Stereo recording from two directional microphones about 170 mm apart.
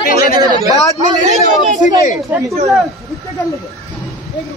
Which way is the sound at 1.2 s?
45° right (ahead or behind).